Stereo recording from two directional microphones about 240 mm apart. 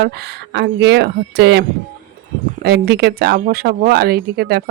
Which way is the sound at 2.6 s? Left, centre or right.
Right.